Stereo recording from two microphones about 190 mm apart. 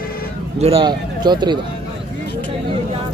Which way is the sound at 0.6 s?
30° right (ahead or behind).